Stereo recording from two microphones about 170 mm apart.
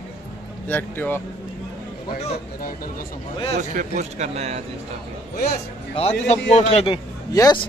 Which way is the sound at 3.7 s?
45° right (ahead or behind).